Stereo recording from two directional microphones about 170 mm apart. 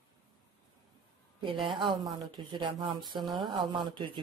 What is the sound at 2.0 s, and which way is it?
Speech, 30° right (ahead or behind).